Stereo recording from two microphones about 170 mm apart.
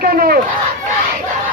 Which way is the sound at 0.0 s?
60° right (ahead or behind).